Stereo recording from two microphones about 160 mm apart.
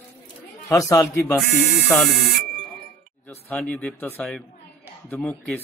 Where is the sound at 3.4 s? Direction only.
10° left (ahead or behind).